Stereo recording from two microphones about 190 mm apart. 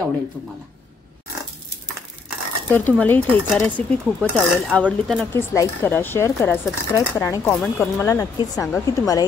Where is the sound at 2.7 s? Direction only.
10° left (ahead or behind).